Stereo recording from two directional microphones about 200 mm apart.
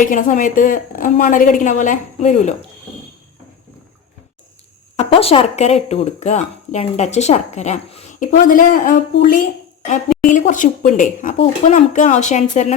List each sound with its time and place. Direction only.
0.0 s speech: 40° left (ahead or behind)
4.9 s speech: 30° left (ahead or behind)